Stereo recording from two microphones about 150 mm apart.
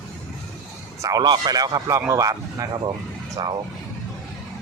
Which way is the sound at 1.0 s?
25° right (ahead or behind).